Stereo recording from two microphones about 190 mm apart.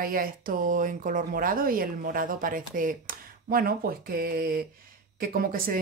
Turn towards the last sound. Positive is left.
turn(degrees=-50)  # may be behind; listen again after turning